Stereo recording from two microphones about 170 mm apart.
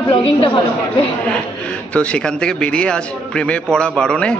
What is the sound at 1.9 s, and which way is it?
A man's voice, 5° left (ahead or behind).